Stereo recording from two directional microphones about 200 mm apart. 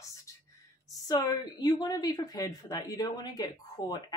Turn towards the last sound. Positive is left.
turn(degrees=20)  # may be behind; listen again after turning